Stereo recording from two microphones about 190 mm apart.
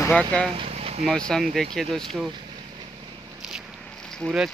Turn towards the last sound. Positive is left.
turn(degrees=0)  # may be behind; listen again after turning